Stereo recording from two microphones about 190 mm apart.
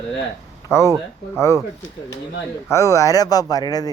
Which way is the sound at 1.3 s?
15° left (ahead or behind).